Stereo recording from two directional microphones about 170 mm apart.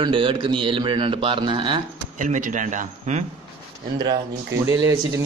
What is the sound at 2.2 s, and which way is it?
Speech, 50° right (ahead or behind).